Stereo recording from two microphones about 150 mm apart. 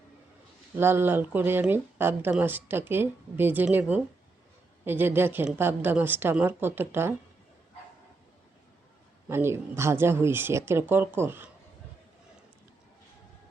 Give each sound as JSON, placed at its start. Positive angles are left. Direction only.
{"t": 0.8, "sound": "a woman's voice", "side_deg": -15}
{"t": 9.3, "sound": "a woman's voice", "side_deg": -15}